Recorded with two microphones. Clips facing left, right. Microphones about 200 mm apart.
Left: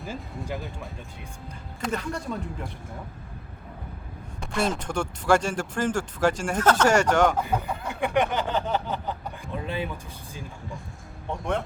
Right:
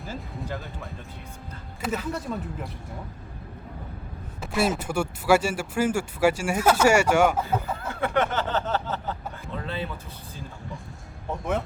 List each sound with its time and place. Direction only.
0.5 s speech: centre (ahead or behind)
4.4 s speech: 5° right (ahead or behind)
7.8 s a sound: 15° left (ahead or behind)
11.3 s speech: 5° right (ahead or behind)